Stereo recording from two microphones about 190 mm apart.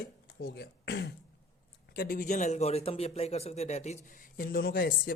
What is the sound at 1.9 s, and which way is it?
A man's voice, 50° left (ahead or behind).